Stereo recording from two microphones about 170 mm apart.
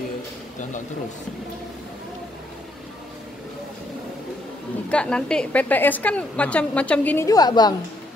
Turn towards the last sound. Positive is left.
turn(degrees=25)  # may be behind; listen again after turning